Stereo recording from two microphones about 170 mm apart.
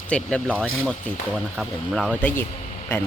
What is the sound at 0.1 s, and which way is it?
Speech, 5° left (ahead or behind).